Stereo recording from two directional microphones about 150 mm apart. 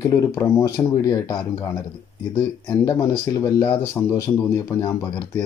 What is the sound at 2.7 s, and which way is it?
A man's voice, 20° left (ahead or behind).